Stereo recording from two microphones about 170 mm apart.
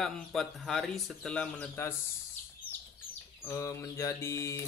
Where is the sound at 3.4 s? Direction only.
15° left (ahead or behind).